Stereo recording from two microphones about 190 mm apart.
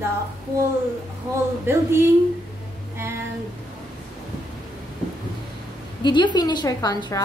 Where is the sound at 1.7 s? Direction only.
15° right (ahead or behind).